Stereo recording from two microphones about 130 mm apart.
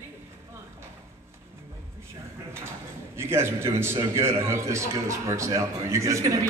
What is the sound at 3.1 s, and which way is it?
A man's voice, 20° right (ahead or behind).